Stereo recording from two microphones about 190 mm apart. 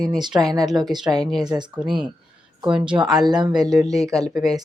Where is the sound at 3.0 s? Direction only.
20° right (ahead or behind).